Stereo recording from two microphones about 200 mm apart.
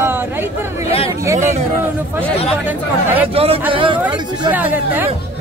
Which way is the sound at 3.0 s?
10° right (ahead or behind).